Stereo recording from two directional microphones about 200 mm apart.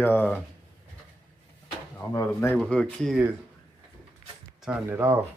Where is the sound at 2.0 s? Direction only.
10° left (ahead or behind).